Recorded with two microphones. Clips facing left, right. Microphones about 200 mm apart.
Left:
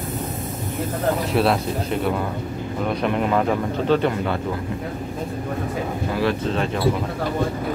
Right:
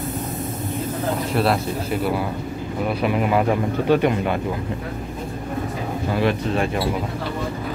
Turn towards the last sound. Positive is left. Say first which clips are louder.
# right 1 dB
turn(degrees=-15)  # may be behind; listen again after turning